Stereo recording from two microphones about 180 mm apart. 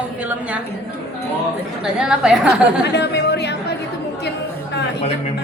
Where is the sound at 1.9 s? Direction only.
5° right (ahead or behind).